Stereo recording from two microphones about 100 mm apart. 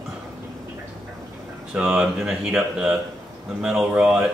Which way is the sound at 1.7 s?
5° right (ahead or behind).